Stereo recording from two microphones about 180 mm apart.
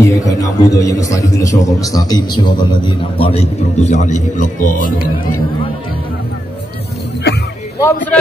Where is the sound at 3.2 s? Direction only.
35° left (ahead or behind).